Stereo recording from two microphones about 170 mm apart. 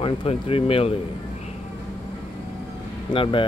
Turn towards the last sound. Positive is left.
turn(degrees=30)  # may be behind; listen again after turning